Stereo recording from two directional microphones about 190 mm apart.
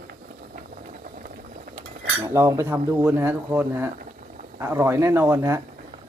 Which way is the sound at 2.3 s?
15° right (ahead or behind).